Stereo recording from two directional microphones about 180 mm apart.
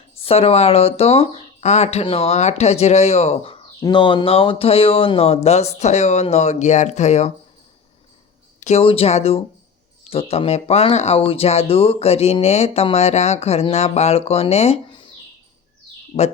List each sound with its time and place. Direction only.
0.2 s speech: 35° left (ahead or behind)
8.6 s speech: 35° left (ahead or behind)
16.1 s speech: 40° left (ahead or behind)